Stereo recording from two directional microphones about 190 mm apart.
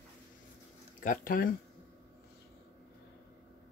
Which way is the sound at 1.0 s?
45° left (ahead or behind).